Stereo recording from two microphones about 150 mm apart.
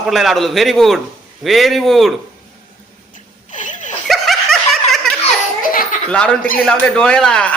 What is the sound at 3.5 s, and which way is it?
Zipper, 55° left (ahead or behind).